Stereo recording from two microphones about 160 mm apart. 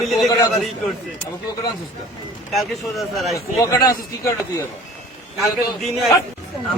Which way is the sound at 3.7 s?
25° left (ahead or behind).